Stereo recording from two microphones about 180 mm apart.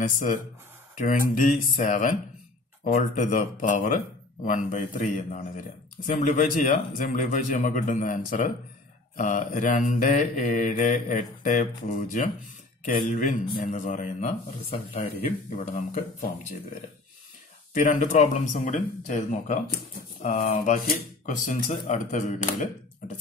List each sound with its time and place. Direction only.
0.0 s a man's voice: 45° left (ahead or behind)
17.7 s speech: 40° left (ahead or behind)